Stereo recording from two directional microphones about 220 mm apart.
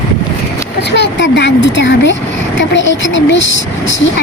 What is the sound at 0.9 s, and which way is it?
Speech, 55° left (ahead or behind).